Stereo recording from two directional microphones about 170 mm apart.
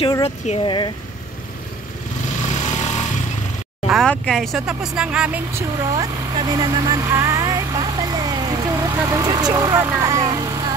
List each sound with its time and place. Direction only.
0.0 s speech: 35° left (ahead or behind)
2.5 s vehicle: 45° left (ahead or behind)
3.8 s speech: centre (ahead or behind)
6.5 s vehicle: 20° right (ahead or behind)